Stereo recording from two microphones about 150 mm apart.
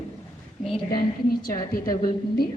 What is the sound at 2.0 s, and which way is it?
Speech, 90° left.